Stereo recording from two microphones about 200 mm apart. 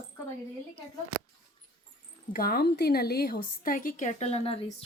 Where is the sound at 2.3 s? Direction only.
50° left (ahead or behind); by 4.6 s 30° left (ahead or behind).